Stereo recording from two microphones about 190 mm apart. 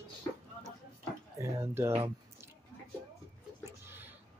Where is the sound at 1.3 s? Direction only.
15° right (ahead or behind).